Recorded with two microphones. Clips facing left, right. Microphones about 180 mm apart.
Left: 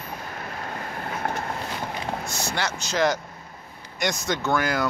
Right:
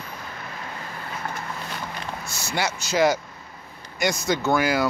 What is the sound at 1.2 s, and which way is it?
Vehicle, 55° left (ahead or behind).